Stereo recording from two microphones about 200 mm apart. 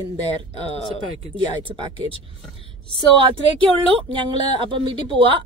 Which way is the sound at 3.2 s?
25° right (ahead or behind).